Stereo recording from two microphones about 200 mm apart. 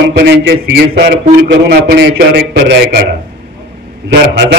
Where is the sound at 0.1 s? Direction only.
55° right (ahead or behind).